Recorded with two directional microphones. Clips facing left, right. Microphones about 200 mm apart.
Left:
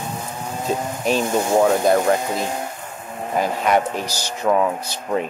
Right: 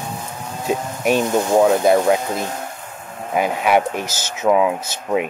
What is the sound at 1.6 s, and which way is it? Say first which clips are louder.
Speech: right 2 dB; 5° right (ahead or behind).